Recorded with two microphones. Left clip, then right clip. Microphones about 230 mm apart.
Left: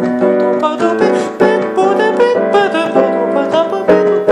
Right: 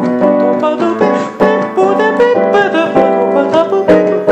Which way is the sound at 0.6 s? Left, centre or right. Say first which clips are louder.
Right 1 dB; centre.